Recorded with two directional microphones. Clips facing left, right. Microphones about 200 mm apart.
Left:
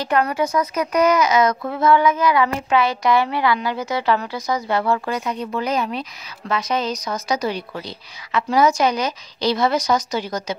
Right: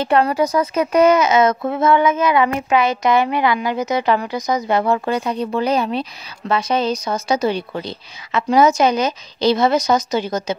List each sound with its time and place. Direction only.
0.0 s a woman's voice: 30° right (ahead or behind)